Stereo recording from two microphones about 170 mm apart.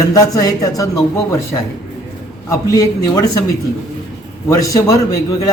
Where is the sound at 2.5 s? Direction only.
20° left (ahead or behind).